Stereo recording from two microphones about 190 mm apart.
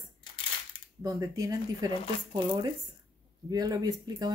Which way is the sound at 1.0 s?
15° right (ahead or behind).